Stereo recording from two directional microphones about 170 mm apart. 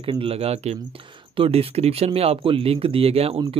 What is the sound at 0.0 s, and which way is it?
Speech, 30° right (ahead or behind).